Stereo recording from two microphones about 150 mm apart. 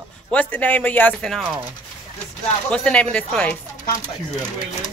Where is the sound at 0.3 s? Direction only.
10° left (ahead or behind).